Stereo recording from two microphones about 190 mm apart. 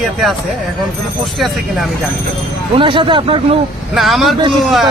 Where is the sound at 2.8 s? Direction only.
25° right (ahead or behind).